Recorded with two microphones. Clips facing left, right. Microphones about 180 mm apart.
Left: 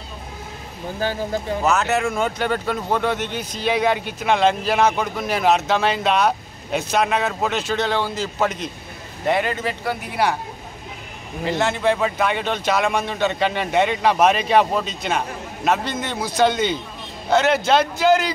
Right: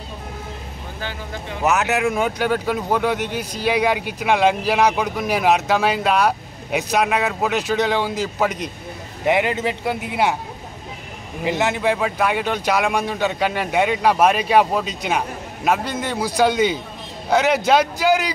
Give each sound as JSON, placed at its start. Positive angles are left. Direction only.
{"t": 1.0, "sound": "speech", "side_deg": 40}
{"t": 1.6, "sound": "speech", "side_deg": -15}
{"t": 11.4, "sound": "speech", "side_deg": -15}